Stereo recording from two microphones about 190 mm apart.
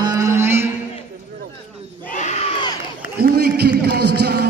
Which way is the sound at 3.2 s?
60° right (ahead or behind).